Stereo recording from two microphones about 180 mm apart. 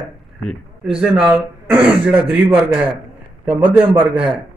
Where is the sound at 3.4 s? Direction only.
10° right (ahead or behind).